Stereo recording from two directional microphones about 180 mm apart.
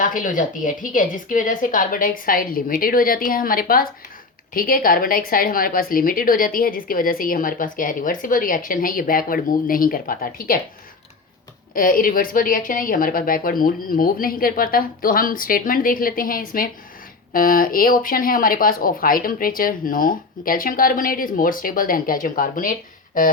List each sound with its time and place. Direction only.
0.0 s speech: 50° left (ahead or behind)
11.7 s speech: 50° left (ahead or behind)